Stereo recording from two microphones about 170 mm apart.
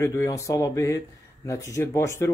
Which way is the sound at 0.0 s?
15° left (ahead or behind).